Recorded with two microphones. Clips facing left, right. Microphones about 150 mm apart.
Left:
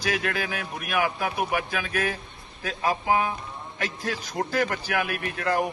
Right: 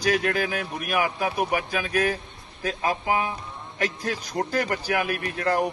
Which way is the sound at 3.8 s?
45° right (ahead or behind).